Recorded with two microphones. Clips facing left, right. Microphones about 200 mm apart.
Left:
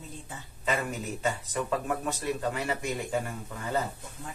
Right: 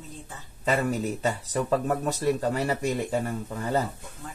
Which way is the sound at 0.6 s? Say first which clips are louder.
Right 6 dB; 35° right (ahead or behind).